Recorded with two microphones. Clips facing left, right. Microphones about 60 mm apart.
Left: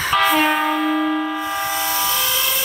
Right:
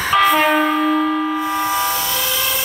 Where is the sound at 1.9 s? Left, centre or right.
Centre.